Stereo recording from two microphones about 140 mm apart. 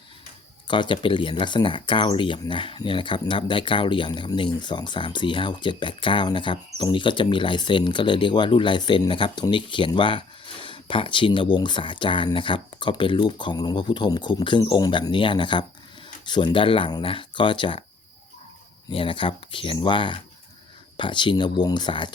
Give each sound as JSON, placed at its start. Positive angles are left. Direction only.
{"t": 0.7, "sound": "speech", "side_deg": 35}
{"t": 18.9, "sound": "speech", "side_deg": 40}